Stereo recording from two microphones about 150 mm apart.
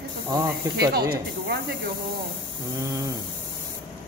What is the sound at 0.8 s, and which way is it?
Speech, 90° right.